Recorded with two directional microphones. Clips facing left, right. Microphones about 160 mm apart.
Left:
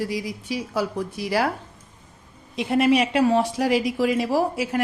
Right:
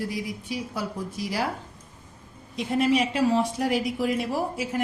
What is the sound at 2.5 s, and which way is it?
Speech, 70° left (ahead or behind).